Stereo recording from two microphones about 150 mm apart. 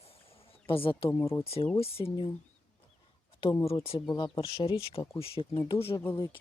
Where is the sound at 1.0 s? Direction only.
20° left (ahead or behind).